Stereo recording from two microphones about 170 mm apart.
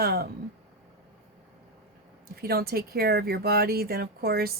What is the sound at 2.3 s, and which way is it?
A woman's voice, 65° right (ahead or behind).